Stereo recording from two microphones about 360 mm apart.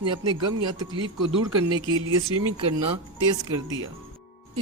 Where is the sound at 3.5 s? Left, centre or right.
Centre.